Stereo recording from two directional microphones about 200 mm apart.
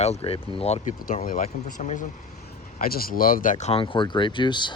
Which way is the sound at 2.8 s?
45° left (ahead or behind).